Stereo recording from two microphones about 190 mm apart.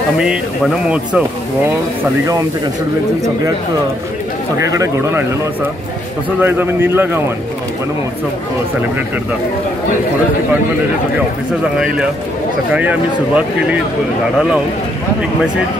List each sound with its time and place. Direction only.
0.8 s a man's voice: 5° right (ahead or behind)
4.6 s a man's voice: 15° right (ahead or behind)
6.4 s a man's voice: 10° right (ahead or behind)
12.7 s a man's voice: 5° right (ahead or behind)